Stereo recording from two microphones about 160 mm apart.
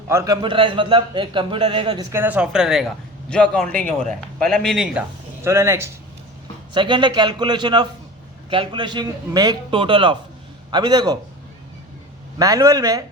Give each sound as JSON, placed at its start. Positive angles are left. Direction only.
{"t": 0.1, "sound": "speech", "side_deg": -20}
{"t": 0.4, "sound": "a man's voice", "side_deg": -30}
{"t": 2.1, "sound": "speech", "side_deg": -10}
{"t": 5.4, "sound": "speech", "side_deg": -15}
{"t": 6.7, "sound": "a man's voice", "side_deg": -30}
{"t": 12.4, "sound": "a man's voice", "side_deg": -20}